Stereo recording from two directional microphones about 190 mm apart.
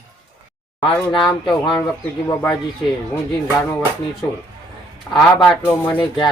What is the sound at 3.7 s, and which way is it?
Speech, 5° left (ahead or behind).